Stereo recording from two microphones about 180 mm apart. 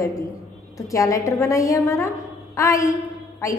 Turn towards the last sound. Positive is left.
turn(degrees=15)  # may be behind; listen again after turning